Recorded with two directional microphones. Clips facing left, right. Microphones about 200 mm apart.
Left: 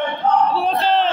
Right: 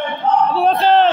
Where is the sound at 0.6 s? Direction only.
60° right (ahead or behind).